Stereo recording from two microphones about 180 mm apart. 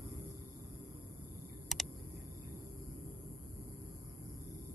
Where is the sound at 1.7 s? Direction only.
Centre (ahead or behind).